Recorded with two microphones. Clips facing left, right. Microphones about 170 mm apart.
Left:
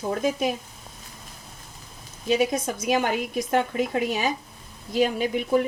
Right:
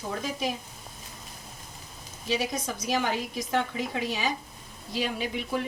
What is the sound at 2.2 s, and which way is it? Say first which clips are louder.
A woman's voice: left 7 dB; 50° left (ahead or behind).